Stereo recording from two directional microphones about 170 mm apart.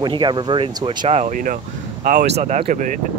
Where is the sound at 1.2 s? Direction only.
50° right (ahead or behind).